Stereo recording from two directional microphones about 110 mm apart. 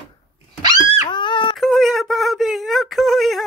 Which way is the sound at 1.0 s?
45° left (ahead or behind).